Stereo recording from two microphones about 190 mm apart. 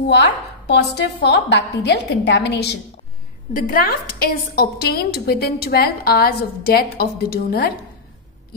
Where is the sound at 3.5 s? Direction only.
45° left (ahead or behind).